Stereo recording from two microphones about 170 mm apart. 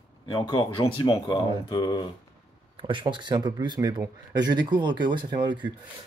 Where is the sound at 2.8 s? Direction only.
30° right (ahead or behind).